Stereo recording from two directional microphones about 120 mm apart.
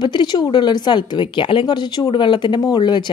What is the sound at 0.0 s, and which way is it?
A woman's voice, 40° left (ahead or behind).